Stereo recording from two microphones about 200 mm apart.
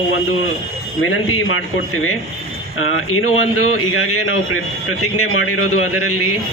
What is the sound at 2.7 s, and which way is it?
Speech, 90° left.